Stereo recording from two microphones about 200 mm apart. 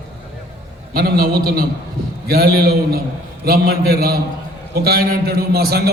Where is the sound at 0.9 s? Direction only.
50° right (ahead or behind).